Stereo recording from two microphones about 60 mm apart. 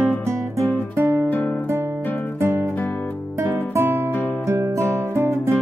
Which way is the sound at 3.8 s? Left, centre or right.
Right.